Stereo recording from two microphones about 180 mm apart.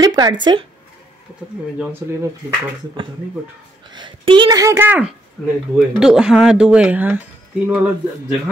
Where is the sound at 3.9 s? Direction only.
25° right (ahead or behind); by 7.2 s 10° right (ahead or behind).